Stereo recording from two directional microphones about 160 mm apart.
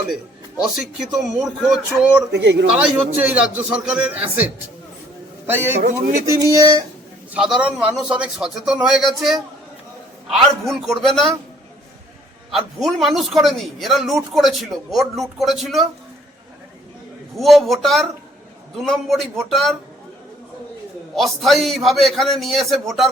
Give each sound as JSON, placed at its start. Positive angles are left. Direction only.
{"t": 0.6, "sound": "a man's voice", "side_deg": 0}
{"t": 2.3, "sound": "a man's voice", "side_deg": -90}
{"t": 3.2, "sound": "a man's voice", "side_deg": -10}
{"t": 5.7, "sound": "a man's voice", "side_deg": -50}
{"t": 6.2, "sound": "speech", "side_deg": -20}
{"t": 7.3, "sound": "a man's voice", "side_deg": -5}
{"t": 12.5, "sound": "a man's voice", "side_deg": 0}
{"t": 17.3, "sound": "a man's voice", "side_deg": 0}
{"t": 21.2, "sound": "a man's voice", "side_deg": 0}